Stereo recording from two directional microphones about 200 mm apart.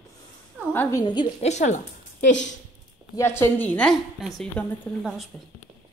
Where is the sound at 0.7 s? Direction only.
15° left (ahead or behind).